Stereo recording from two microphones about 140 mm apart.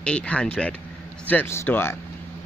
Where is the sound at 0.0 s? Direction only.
10° left (ahead or behind).